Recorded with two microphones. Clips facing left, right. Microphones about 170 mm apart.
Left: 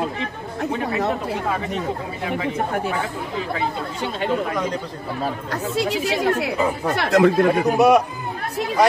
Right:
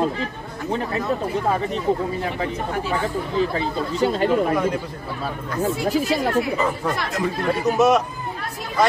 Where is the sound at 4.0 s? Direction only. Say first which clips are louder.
Right 7 dB; 40° right (ahead or behind).